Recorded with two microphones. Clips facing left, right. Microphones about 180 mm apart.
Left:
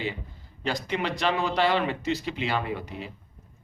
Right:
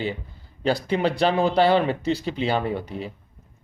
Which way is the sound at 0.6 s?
35° right (ahead or behind).